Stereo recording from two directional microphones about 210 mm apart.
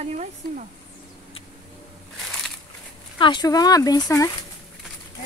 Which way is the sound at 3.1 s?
20° left (ahead or behind).